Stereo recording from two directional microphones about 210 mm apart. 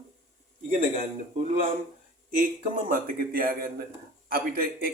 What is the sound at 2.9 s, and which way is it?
A man's voice, 45° right (ahead or behind).